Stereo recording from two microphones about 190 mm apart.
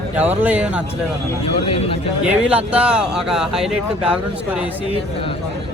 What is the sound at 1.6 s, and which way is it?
Speech, 30° left (ahead or behind).